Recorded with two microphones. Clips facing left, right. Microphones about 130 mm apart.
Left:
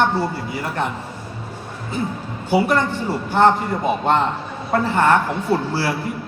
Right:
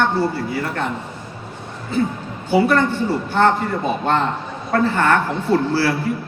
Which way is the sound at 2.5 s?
15° left (ahead or behind).